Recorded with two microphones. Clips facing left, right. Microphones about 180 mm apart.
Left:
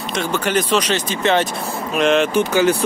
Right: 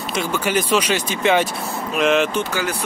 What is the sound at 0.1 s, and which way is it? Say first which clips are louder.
Speech: left 1 dB; 10° right (ahead or behind).